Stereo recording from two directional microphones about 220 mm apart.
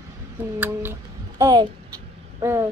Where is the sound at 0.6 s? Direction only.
10° right (ahead or behind).